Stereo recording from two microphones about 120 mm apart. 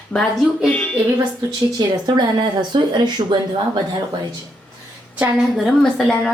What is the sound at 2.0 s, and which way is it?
Speech, 35° right (ahead or behind).